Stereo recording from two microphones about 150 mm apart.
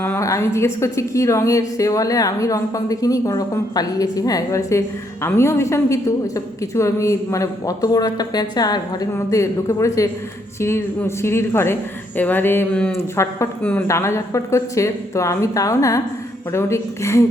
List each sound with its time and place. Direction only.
0.0 s a woman's voice: 15° left (ahead or behind)